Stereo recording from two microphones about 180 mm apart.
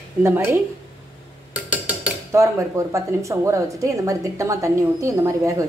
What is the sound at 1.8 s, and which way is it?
Speech, 15° right (ahead or behind).